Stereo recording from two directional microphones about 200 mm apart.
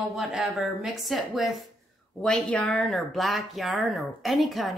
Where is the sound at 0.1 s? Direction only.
Centre (ahead or behind).